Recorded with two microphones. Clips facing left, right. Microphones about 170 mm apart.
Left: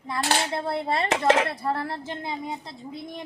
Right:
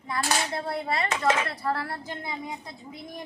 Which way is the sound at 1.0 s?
75° left (ahead or behind).